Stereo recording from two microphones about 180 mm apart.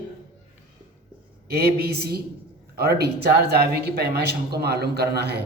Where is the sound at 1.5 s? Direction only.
60° right (ahead or behind).